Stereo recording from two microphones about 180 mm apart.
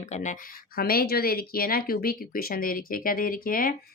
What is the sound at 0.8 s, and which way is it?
Speech, 55° left (ahead or behind).